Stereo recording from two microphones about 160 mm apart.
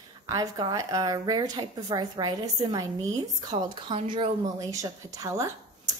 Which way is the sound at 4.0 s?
35° right (ahead or behind).